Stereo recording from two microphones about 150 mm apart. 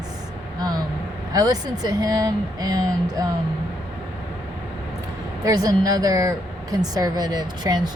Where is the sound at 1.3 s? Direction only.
25° right (ahead or behind).